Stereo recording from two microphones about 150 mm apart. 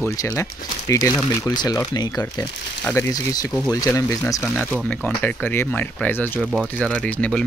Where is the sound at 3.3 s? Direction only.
25° left (ahead or behind).